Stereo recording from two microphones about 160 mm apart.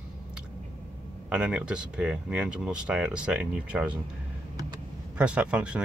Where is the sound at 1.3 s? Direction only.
5° right (ahead or behind).